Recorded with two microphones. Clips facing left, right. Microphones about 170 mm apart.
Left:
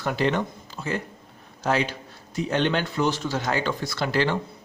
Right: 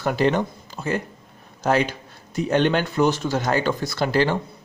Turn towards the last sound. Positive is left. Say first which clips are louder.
# right 3 dB
turn(degrees=-40)  # may be behind; listen again after turning